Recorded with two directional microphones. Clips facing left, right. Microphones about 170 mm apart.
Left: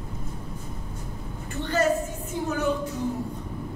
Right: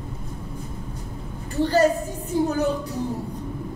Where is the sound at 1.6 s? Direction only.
35° right (ahead or behind).